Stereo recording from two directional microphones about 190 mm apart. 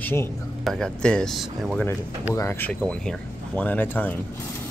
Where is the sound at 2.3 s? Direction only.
15° left (ahead or behind).